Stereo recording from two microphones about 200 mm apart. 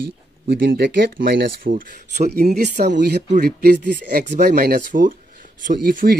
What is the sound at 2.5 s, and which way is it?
Speech, 55° right (ahead or behind).